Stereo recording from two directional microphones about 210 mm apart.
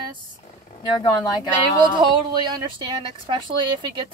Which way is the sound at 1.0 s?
20° left (ahead or behind).